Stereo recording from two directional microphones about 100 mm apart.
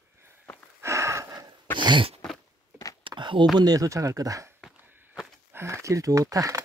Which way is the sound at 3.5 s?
40° right (ahead or behind).